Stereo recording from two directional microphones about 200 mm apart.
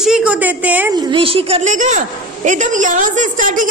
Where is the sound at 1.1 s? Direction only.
25° right (ahead or behind).